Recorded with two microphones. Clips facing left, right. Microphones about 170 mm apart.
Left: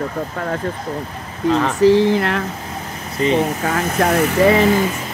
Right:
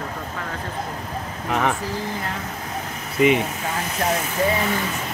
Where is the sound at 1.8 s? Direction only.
75° left (ahead or behind).